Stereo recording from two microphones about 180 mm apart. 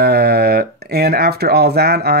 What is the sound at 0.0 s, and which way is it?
Speech, 60° right (ahead or behind).